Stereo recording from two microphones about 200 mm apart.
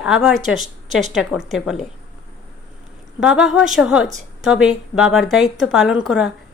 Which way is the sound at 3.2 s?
5° right (ahead or behind).